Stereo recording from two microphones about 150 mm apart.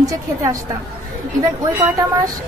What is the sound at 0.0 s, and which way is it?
Speech, 20° right (ahead or behind).